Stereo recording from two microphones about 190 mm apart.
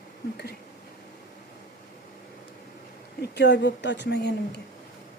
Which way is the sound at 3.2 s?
65° left (ahead or behind).